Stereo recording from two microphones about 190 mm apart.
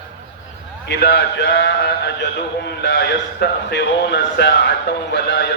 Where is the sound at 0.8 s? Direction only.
60° left (ahead or behind).